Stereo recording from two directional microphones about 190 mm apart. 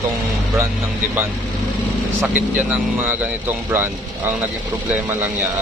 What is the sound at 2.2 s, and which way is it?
Speech, 10° right (ahead or behind).